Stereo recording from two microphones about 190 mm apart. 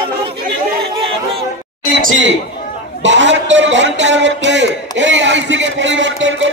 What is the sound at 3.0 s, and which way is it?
A man's voice, 75° right (ahead or behind).